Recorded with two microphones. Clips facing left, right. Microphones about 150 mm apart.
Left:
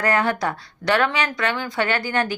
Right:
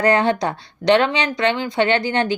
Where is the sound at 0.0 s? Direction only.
25° right (ahead or behind).